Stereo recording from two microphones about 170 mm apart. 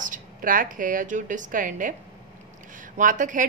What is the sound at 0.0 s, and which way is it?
A woman's voice, 50° right (ahead or behind).